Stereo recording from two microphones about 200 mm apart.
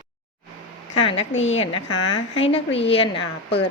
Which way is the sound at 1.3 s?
70° left (ahead or behind).